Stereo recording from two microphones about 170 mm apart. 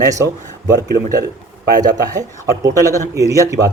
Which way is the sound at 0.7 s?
20° right (ahead or behind).